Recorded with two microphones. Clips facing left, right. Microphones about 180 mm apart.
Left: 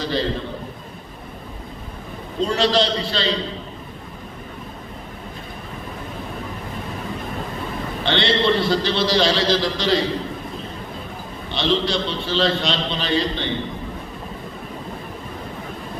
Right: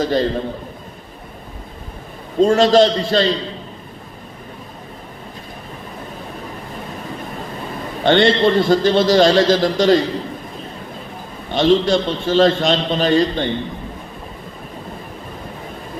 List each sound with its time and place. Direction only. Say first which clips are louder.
0.0 s a man's voice: right 6 dB; 45° right (ahead or behind)
2.4 s a man's voice: right 8 dB; 45° right (ahead or behind)
8.0 s a man's voice: right 6 dB; 45° right (ahead or behind)
11.5 s a man's voice: right 7 dB; 45° right (ahead or behind)